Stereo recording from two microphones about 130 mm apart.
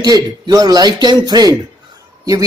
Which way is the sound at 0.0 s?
30° right (ahead or behind).